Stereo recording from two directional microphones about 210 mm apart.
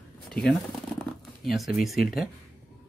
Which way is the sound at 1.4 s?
Centre (ahead or behind).